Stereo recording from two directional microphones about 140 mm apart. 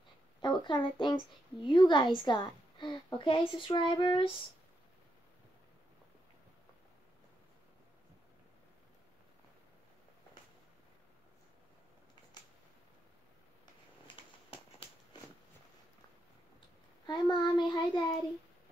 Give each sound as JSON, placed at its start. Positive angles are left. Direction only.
{"t": 0.4, "sound": "speech", "side_deg": 35}
{"t": 14.0, "sound": "a sound", "side_deg": 40}
{"t": 17.0, "sound": "speech", "side_deg": 30}